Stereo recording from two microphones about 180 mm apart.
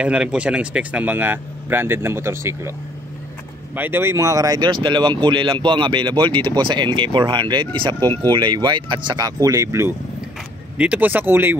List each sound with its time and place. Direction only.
0.0 s speech: 5° right (ahead or behind)
3.7 s speech: 10° right (ahead or behind)